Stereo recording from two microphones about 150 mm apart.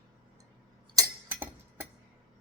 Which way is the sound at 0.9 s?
15° right (ahead or behind).